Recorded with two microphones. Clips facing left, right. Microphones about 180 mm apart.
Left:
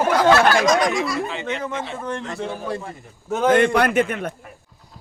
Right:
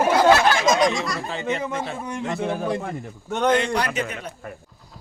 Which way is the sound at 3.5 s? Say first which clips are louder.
Left 9 dB; 55° left (ahead or behind).